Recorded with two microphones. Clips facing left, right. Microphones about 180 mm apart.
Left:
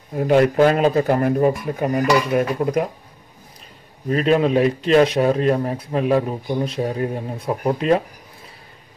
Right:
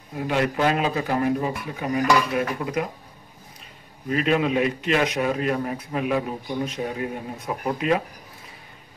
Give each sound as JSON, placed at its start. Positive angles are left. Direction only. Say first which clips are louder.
{"t": 0.2, "sound": "speech", "louder": "left 8 dB", "side_deg": 45}
{"t": 4.1, "sound": "a man's voice", "louder": "left 5 dB", "side_deg": 35}